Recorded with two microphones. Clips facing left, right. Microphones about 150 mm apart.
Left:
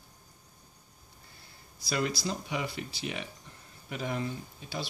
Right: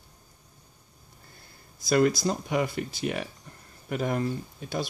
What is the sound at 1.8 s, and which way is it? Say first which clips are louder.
Speech: right 9 dB; 50° right (ahead or behind).